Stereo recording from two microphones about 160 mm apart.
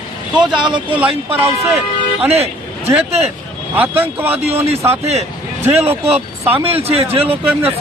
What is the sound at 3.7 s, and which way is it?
Speech, 10° right (ahead or behind).